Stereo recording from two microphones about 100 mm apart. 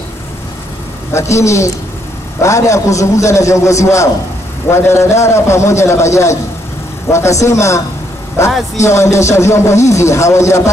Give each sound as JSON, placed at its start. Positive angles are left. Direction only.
{"t": 1.1, "sound": "a man's voice", "side_deg": 30}